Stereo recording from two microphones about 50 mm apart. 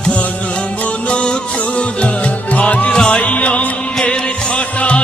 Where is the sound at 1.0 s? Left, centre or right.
Left.